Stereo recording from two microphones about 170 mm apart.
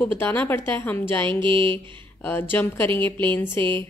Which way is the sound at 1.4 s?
30° right (ahead or behind).